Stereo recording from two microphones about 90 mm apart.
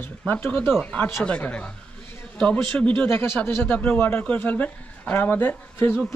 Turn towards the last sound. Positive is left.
turn(degrees=25)  # may be behind; listen again after turning